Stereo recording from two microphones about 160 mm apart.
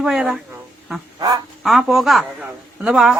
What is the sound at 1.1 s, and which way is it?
Speech, 25° right (ahead or behind).